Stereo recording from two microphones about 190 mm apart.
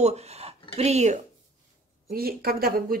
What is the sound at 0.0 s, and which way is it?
Speech, 35° right (ahead or behind).